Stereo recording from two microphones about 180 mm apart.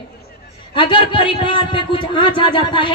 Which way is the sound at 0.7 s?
30° left (ahead or behind).